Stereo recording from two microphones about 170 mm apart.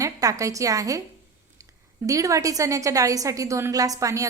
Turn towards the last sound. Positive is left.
turn(degrees=-20)  # may be behind; listen again after turning